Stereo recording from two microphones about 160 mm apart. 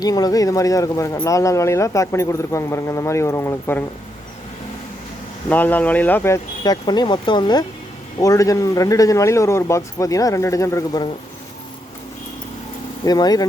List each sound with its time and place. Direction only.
0.0 s speech: 25° left (ahead or behind)
5.5 s speech: 10° left (ahead or behind)
13.1 s speech: 25° left (ahead or behind)